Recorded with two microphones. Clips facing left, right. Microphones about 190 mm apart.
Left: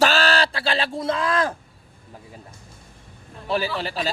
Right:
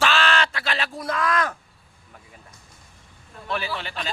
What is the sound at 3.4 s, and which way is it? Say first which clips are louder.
Speech: left 5 dB; 35° left (ahead or behind).